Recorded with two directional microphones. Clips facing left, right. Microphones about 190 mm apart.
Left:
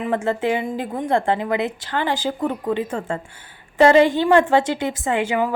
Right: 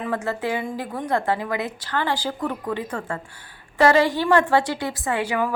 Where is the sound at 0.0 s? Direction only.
20° left (ahead or behind).